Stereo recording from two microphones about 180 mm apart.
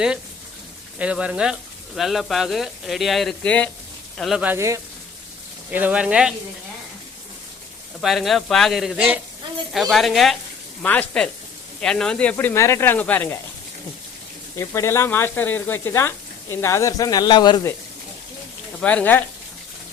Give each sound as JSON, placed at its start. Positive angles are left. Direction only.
{"t": 0.9, "sound": "speech", "side_deg": -5}
{"t": 4.2, "sound": "speech", "side_deg": -5}
{"t": 8.0, "sound": "speech", "side_deg": 0}
{"t": 14.5, "sound": "speech", "side_deg": 15}
{"t": 18.8, "sound": "speech", "side_deg": 5}